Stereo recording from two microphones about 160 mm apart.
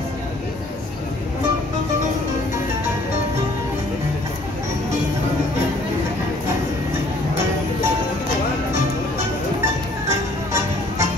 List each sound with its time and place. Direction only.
10.0 s music: 20° right (ahead or behind)